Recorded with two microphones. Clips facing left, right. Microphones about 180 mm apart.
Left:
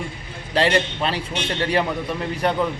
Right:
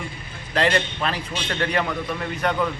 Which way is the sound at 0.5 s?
30° left (ahead or behind).